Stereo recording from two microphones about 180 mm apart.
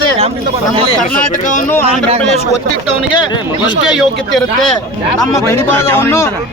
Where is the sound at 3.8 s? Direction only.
Centre (ahead or behind).